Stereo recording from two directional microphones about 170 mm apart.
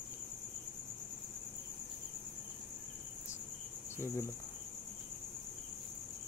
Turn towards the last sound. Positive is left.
turn(degrees=15)  # may be behind; listen again after turning